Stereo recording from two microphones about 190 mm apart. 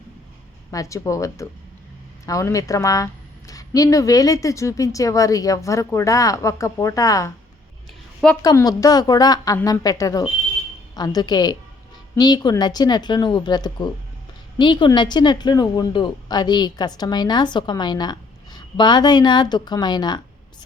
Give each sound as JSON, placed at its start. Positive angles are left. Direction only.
{"t": 0.7, "sound": "a woman's voice", "side_deg": 15}
{"t": 8.4, "sound": "a woman's voice", "side_deg": 20}